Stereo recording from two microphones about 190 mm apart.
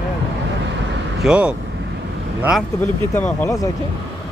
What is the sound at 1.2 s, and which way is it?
Speech, 5° right (ahead or behind).